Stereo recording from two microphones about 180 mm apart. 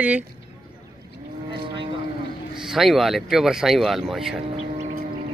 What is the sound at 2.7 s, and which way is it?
Speech, centre (ahead or behind).